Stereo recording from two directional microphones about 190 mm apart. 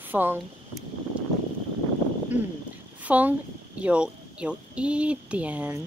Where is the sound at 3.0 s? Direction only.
10° right (ahead or behind).